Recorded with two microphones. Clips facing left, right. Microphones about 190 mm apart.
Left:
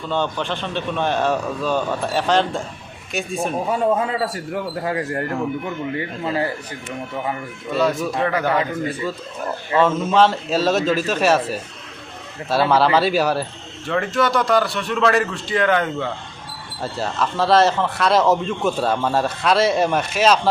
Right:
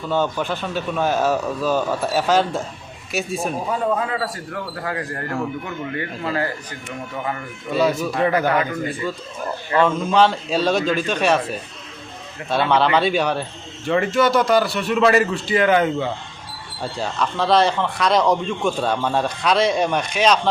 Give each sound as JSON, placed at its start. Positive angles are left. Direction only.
{"t": 0.1, "sound": "a man's voice", "side_deg": -5}
{"t": 3.7, "sound": "a man's voice", "side_deg": 25}
{"t": 7.7, "sound": "a man's voice", "side_deg": 0}